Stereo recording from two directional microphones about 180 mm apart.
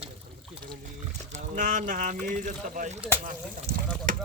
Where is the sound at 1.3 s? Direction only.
45° right (ahead or behind).